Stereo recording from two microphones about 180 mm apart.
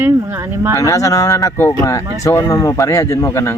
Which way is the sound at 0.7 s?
20° left (ahead or behind).